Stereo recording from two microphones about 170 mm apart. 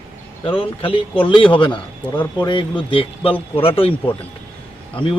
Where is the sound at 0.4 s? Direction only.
30° left (ahead or behind).